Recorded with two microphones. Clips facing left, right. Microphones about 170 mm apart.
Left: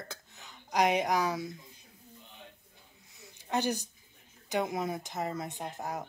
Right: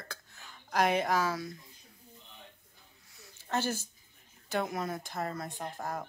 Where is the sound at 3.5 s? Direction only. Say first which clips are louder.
Left 2 dB; 15° left (ahead or behind).